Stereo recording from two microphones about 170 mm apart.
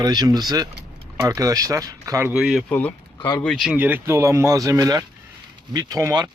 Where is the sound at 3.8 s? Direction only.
10° right (ahead or behind).